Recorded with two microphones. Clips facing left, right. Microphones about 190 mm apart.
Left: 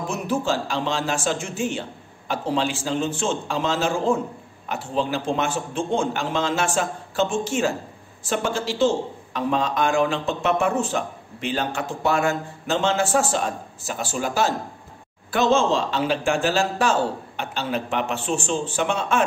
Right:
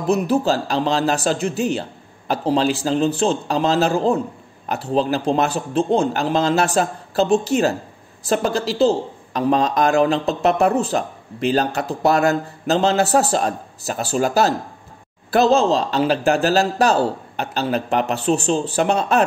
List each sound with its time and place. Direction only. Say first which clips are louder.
0.1 s a man's voice: right 7 dB; 35° right (ahead or behind)